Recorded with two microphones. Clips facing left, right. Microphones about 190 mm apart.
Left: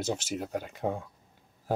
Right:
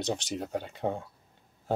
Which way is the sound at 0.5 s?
25° right (ahead or behind).